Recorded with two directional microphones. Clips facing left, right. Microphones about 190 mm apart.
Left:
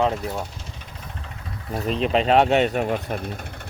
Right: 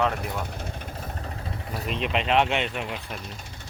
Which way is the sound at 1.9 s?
35° left (ahead or behind).